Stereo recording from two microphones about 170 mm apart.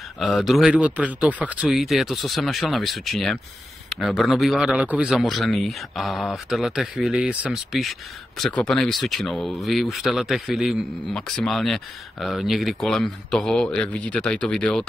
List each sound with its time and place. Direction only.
0.2 s a man's voice: centre (ahead or behind)